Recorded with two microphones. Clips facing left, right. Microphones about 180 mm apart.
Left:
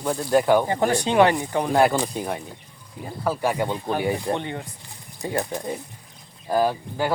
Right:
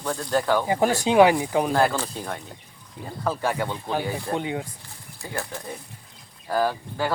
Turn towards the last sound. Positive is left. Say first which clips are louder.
# left 2 dB
turn(degrees=15)  # may be behind; listen again after turning